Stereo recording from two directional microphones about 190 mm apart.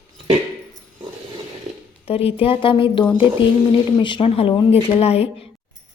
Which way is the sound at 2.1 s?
30° left (ahead or behind).